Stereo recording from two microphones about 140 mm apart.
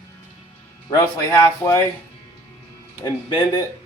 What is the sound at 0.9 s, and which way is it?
Speech, 20° left (ahead or behind).